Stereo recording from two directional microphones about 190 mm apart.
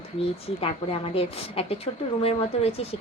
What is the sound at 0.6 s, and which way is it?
A woman's voice, 30° left (ahead or behind).